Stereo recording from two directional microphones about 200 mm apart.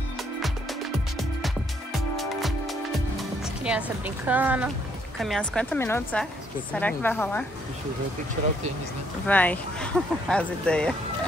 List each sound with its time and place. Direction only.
1.4 s music: centre (ahead or behind)
3.2 s speech: 5° right (ahead or behind)
9.3 s speech: 10° left (ahead or behind)